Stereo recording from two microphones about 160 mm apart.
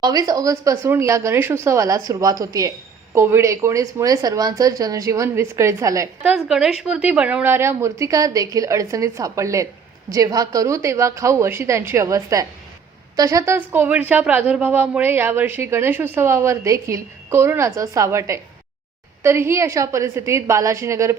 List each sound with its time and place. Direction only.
0.0 s a woman's voice: 25° right (ahead or behind)
6.2 s a woman's voice: 5° right (ahead or behind)